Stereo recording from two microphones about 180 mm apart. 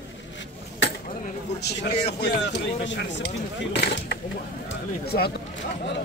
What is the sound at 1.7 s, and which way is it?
Speech, 70° left (ahead or behind).